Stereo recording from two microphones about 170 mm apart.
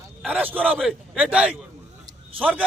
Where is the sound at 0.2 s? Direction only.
10° right (ahead or behind).